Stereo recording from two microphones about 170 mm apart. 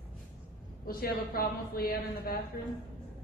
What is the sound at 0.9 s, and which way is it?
A man's voice, 60° left (ahead or behind).